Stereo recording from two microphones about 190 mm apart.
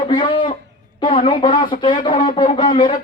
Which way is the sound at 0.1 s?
25° left (ahead or behind).